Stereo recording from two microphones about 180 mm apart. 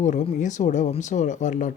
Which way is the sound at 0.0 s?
45° left (ahead or behind).